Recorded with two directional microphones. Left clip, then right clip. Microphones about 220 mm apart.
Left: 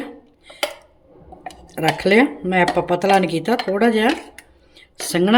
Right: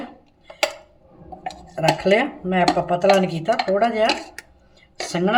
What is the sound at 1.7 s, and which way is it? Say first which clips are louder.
Speech: left 2 dB; 55° left (ahead or behind).